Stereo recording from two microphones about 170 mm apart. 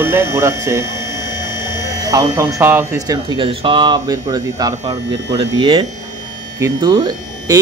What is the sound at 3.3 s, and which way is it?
Speech, 30° right (ahead or behind).